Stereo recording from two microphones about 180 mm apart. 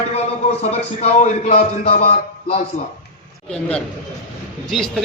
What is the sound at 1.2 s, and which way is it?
A man's voice, 35° left (ahead or behind).